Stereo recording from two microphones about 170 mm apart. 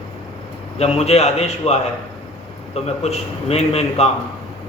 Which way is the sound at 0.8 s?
40° left (ahead or behind).